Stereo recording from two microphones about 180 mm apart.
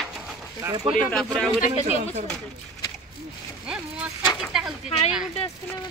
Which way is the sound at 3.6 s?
5° right (ahead or behind).